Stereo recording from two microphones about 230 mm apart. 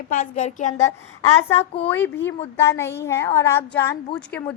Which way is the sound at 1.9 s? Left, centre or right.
Centre.